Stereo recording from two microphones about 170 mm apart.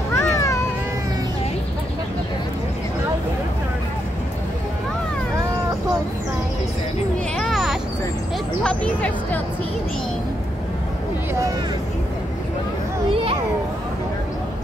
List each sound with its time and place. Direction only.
0.1 s cat: 15° left (ahead or behind)
7.3 s a sound: centre (ahead or behind)
8.6 s music: 5° left (ahead or behind)
13.1 s children playing: 35° right (ahead or behind)